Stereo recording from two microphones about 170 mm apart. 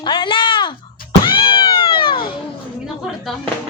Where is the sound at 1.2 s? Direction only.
30° left (ahead or behind).